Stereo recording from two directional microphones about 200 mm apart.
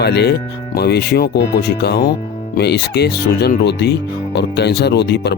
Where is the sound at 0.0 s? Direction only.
55° left (ahead or behind).